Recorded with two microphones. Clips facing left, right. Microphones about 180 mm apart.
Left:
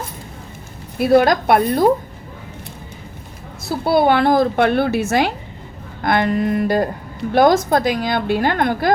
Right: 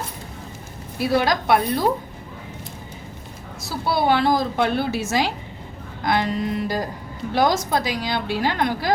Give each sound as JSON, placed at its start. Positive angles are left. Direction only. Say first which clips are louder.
{"t": 0.9, "sound": "a woman's voice", "louder": "left 7 dB", "side_deg": 55}
{"t": 3.7, "sound": "a woman's voice", "louder": "left 5 dB", "side_deg": 55}